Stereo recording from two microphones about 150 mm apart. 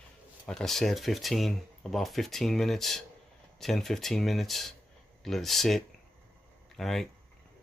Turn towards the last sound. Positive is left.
turn(degrees=0)  # may be behind; listen again after turning